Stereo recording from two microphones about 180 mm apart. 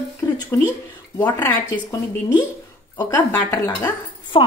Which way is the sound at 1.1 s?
15° left (ahead or behind).